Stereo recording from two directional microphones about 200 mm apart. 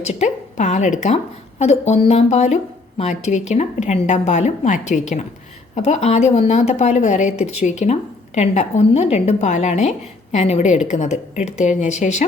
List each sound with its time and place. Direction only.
0.0 s a woman's voice: 35° left (ahead or behind)